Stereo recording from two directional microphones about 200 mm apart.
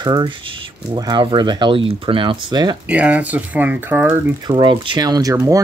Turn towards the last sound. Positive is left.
turn(degrees=-15)  # may be behind; listen again after turning